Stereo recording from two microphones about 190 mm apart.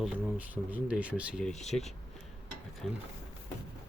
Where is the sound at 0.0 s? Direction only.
5° right (ahead or behind).